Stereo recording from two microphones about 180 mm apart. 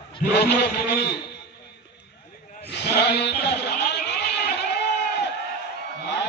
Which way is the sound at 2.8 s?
70° left (ahead or behind).